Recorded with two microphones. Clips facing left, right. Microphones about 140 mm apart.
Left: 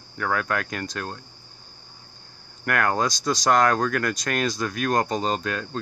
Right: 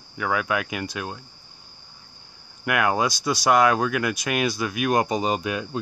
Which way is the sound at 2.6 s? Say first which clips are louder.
Right 1 dB; 10° right (ahead or behind).